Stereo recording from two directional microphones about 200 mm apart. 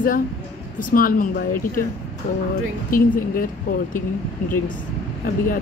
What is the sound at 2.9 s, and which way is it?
Speech, 45° left (ahead or behind).